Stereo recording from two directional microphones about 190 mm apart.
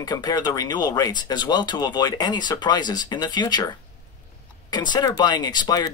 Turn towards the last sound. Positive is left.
turn(degrees=20)  # may be behind; listen again after turning